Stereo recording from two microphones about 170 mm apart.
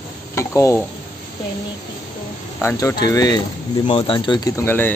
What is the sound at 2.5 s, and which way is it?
Speech, 15° left (ahead or behind).